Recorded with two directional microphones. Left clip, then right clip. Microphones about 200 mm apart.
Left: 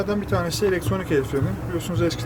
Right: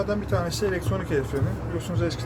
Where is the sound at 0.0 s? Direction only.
45° left (ahead or behind).